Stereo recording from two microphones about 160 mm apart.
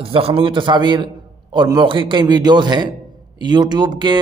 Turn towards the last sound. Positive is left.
turn(degrees=-30)  # may be behind; listen again after turning